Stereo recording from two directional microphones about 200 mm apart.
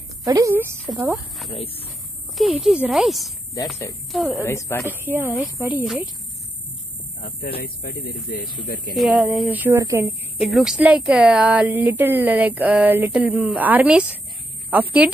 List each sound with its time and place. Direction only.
0.2 s a woman's voice: 15° right (ahead or behind)
1.5 s speech: 30° left (ahead or behind)
2.3 s speech: centre (ahead or behind)
4.5 s a woman's voice: 15° left (ahead or behind)
4.8 s a woman's voice: 10° right (ahead or behind)
7.6 s speech: 50° left (ahead or behind)
8.9 s a woman's voice: 5° right (ahead or behind)